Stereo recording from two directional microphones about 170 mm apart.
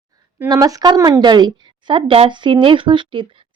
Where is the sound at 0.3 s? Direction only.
20° right (ahead or behind).